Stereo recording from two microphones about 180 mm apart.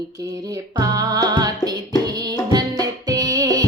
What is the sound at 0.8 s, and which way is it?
Music, 20° right (ahead or behind).